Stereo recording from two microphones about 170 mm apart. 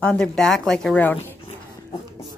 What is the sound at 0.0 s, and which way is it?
Speech, 5° left (ahead or behind).